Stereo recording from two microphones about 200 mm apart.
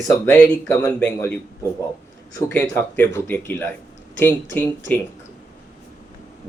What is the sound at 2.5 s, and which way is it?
Speech, 10° left (ahead or behind).